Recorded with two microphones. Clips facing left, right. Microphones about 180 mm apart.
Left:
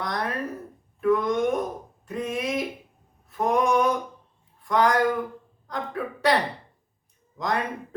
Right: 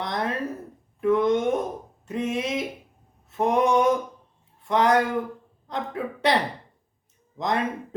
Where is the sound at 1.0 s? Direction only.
25° right (ahead or behind).